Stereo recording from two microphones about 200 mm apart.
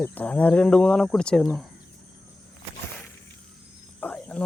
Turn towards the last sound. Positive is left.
turn(degrees=5)  # may be behind; listen again after turning